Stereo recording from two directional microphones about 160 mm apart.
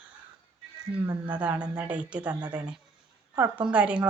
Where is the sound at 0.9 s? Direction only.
10° right (ahead or behind).